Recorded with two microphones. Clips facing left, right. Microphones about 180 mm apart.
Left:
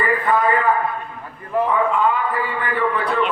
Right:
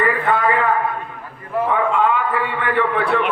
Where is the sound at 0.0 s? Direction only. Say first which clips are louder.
Even; 70° right (ahead or behind).